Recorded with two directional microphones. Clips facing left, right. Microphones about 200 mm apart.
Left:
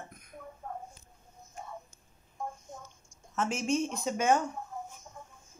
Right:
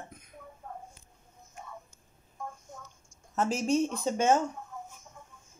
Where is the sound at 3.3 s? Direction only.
35° right (ahead or behind).